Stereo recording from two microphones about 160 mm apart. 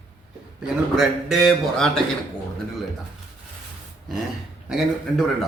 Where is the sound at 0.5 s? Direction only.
5° right (ahead or behind).